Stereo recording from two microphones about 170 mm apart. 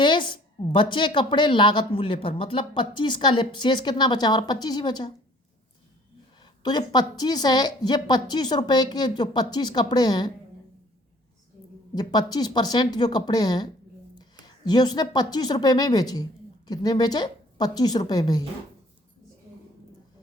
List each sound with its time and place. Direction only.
0.0 s a woman's voice: 30° left (ahead or behind)
6.4 s a woman's voice: 25° left (ahead or behind)
11.9 s a woman's voice: 25° left (ahead or behind)
14.4 s a sound: 25° left (ahead or behind)
15.1 s a woman's voice: 25° left (ahead or behind)